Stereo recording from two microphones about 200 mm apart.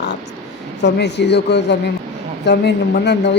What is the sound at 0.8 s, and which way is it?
A man's voice, 60° left (ahead or behind).